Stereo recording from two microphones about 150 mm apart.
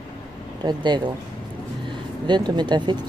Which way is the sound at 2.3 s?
30° right (ahead or behind).